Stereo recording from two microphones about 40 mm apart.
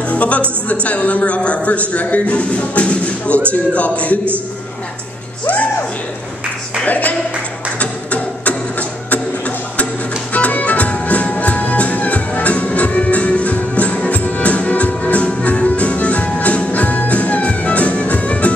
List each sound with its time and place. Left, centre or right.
0.1 s music: left
0.8 s a man's voice: left
5.5 s music: left
6.9 s speech: left
7.8 s printer: left
10.3 s music: left